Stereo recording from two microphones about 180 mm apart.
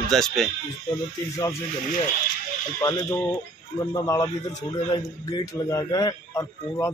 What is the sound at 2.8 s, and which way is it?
A man's voice, 20° left (ahead or behind).